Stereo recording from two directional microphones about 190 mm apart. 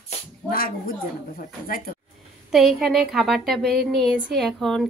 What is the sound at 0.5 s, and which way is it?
Speech, 50° left (ahead or behind).